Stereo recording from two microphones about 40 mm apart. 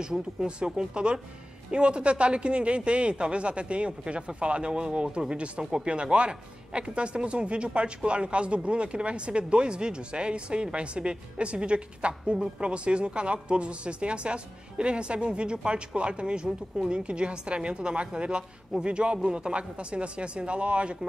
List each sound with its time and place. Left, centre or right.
0.7 s a man's voice: right